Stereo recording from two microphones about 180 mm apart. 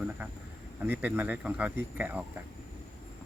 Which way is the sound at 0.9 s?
10° right (ahead or behind).